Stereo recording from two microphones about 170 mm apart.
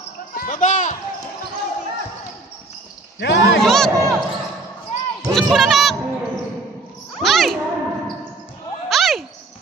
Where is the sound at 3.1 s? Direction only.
90° left.